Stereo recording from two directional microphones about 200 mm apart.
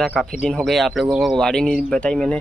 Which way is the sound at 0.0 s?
Centre (ahead or behind).